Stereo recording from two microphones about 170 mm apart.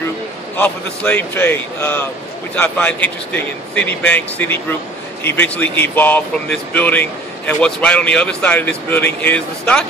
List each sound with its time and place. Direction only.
0.6 s speech: 10° left (ahead or behind)